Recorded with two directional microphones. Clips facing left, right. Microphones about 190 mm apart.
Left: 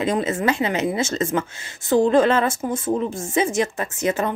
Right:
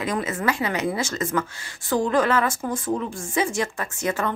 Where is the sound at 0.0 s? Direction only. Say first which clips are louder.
Left 4 dB; 25° left (ahead or behind).